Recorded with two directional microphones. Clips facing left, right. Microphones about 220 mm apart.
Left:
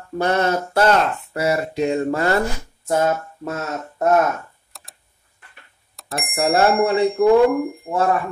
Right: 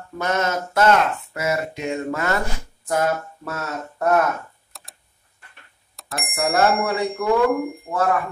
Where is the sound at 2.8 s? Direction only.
25° left (ahead or behind).